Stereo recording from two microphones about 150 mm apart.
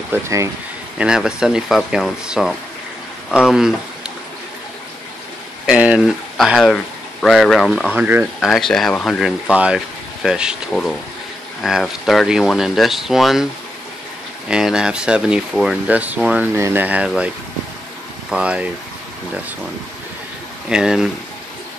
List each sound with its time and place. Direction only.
0.1 s speech: 20° right (ahead or behind)
0.9 s speech: 5° right (ahead or behind)
5.7 s speech: 5° right (ahead or behind)
7.9 s speech: 10° right (ahead or behind)
8.4 s speech: centre (ahead or behind)
9.5 s speech: 5° right (ahead or behind)
14.5 s speech: 5° right (ahead or behind)
18.3 s speech: 10° right (ahead or behind)
20.6 s speech: 5° right (ahead or behind)